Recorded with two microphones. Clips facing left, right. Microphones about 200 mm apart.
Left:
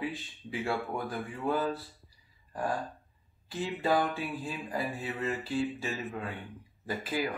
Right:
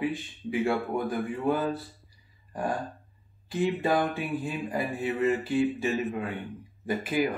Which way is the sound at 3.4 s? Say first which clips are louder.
Right 4 dB; 15° right (ahead or behind).